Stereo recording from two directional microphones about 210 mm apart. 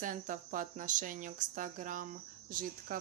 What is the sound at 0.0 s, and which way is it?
Speech, 40° right (ahead or behind).